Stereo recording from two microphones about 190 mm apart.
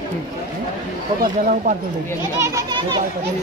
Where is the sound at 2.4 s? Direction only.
20° right (ahead or behind).